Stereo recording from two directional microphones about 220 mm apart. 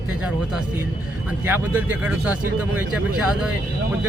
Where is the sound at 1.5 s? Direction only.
10° right (ahead or behind).